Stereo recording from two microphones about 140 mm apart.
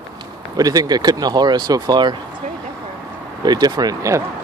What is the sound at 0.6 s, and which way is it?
Speech, 25° right (ahead or behind).